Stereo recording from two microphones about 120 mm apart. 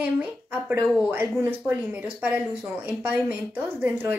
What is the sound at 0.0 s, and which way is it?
Speech, 15° right (ahead or behind).